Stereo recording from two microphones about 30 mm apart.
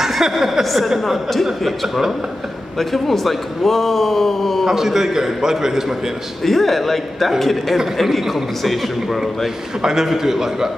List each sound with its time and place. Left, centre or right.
0.2 s a man's voice: centre
4.6 s a man's voice: centre
6.4 s a man's voice: centre
9.8 s a man's voice: centre